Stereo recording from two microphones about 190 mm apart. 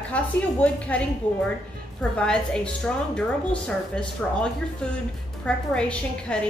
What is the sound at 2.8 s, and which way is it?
A woman's voice, 5° left (ahead or behind).